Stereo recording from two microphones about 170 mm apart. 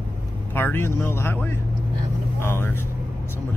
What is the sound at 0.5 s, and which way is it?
Speech, 10° left (ahead or behind).